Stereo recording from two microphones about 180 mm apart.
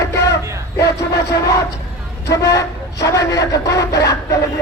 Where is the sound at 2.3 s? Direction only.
20° left (ahead or behind).